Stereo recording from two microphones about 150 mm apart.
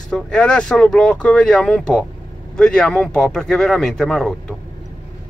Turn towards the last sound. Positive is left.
turn(degrees=5)  # may be behind; listen again after turning